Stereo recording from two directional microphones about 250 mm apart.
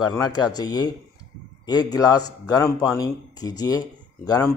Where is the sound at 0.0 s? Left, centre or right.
Centre.